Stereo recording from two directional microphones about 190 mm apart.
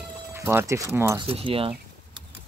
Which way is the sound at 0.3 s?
15° right (ahead or behind).